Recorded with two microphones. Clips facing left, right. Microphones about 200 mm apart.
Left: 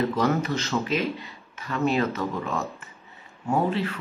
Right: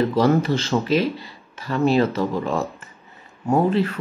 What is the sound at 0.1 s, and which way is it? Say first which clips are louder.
Speech: right 6 dB; 30° right (ahead or behind).